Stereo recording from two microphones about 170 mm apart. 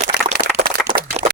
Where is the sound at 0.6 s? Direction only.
60° right (ahead or behind).